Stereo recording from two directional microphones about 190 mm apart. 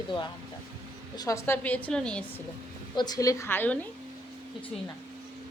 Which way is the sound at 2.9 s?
20° left (ahead or behind).